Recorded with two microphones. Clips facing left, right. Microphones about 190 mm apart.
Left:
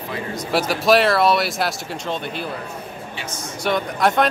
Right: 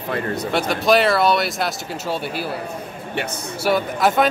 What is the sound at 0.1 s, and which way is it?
Speech, 60° right (ahead or behind).